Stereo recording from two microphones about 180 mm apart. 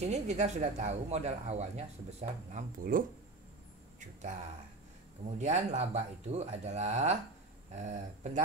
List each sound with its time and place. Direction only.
0.0 s speech: 40° right (ahead or behind)
5.4 s speech: 40° right (ahead or behind)